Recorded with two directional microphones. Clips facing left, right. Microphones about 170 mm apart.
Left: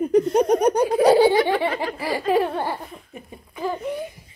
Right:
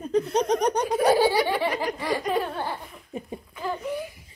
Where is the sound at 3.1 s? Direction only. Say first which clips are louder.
Right 5 dB; 25° right (ahead or behind).